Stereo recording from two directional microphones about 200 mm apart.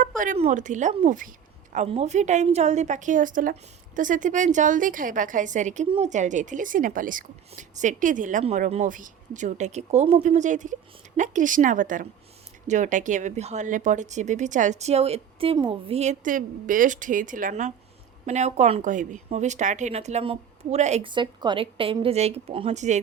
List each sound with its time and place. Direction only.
0.0 s speech: 40° right (ahead or behind)